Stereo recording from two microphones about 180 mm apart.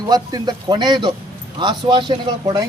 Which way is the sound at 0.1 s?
20° right (ahead or behind).